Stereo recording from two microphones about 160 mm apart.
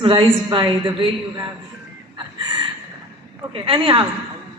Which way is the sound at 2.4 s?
30° right (ahead or behind).